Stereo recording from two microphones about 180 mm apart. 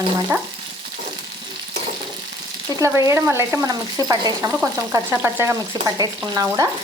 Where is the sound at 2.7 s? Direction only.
15° right (ahead or behind).